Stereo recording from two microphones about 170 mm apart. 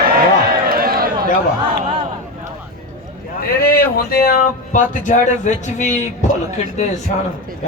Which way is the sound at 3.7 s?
60° left (ahead or behind).